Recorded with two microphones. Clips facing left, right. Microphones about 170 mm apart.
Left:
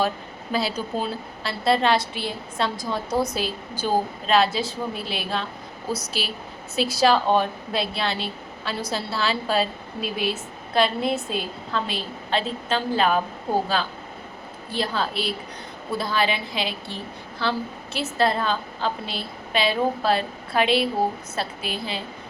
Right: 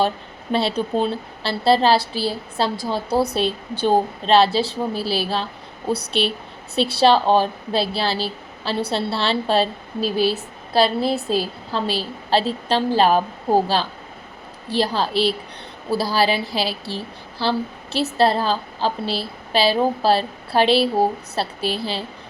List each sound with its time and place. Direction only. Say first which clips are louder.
0.5 s a woman's voice: right 5 dB; 25° right (ahead or behind)